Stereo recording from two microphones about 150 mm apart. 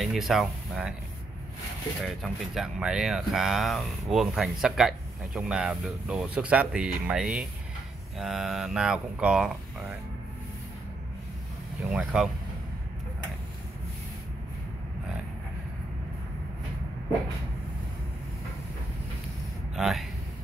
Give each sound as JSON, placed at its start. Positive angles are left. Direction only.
{"t": 0.0, "sound": "speech", "side_deg": 0}
{"t": 2.0, "sound": "speech", "side_deg": 0}
{"t": 11.9, "sound": "speech", "side_deg": -5}
{"t": 19.7, "sound": "speech", "side_deg": 0}